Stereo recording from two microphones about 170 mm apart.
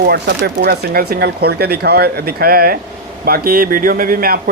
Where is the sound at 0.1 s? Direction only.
65° right (ahead or behind).